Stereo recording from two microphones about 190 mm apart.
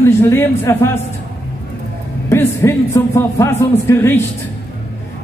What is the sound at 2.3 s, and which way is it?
Speech, 15° left (ahead or behind).